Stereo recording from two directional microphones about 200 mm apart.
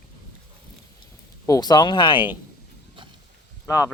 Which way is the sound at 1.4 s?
20° left (ahead or behind).